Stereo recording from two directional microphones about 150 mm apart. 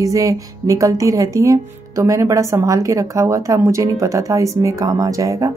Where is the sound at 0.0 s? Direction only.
20° right (ahead or behind).